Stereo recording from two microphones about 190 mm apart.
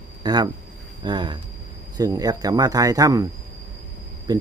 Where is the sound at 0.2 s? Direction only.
20° right (ahead or behind).